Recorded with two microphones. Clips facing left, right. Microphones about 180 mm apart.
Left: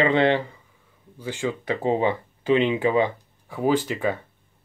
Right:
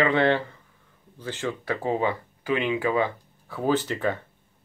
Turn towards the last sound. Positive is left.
turn(degrees=10)  # may be behind; listen again after turning